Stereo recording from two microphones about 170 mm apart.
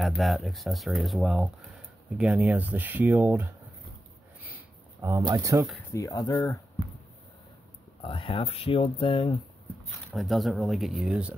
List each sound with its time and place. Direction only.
0.0 s speech: centre (ahead or behind)
5.0 s speech: 20° right (ahead or behind)
5.9 s speech: 20° left (ahead or behind)
8.0 s speech: 30° left (ahead or behind)
10.1 s speech: centre (ahead or behind)